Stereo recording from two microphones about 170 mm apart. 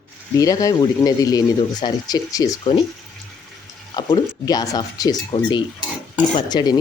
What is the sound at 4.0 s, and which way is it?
Speech, 25° left (ahead or behind).